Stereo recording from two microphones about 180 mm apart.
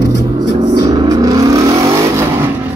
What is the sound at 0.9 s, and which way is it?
Vehicle, 20° right (ahead or behind).